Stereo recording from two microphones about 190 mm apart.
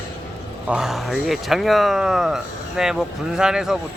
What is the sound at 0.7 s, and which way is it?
Speech, 5° right (ahead or behind).